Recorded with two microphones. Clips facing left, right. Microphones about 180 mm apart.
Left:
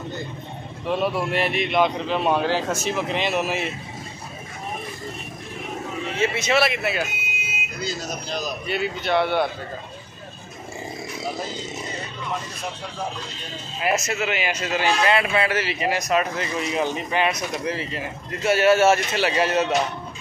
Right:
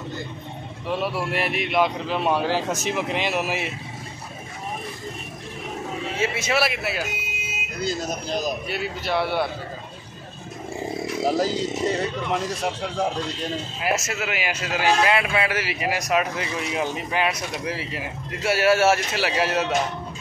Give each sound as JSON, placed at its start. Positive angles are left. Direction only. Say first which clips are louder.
{"t": 0.8, "sound": "a man's voice", "louder": "left 3 dB", "side_deg": -5}
{"t": 6.1, "sound": "a man's voice", "louder": "left 3 dB", "side_deg": -5}
{"t": 7.8, "sound": "speech", "louder": "right 3 dB", "side_deg": -50}
{"t": 8.6, "sound": "a man's voice", "louder": "left 3 dB", "side_deg": -5}
{"t": 11.2, "sound": "speech", "louder": "right 9 dB", "side_deg": -80}
{"t": 13.7, "sound": "a man's voice", "louder": "left 4 dB", "side_deg": -5}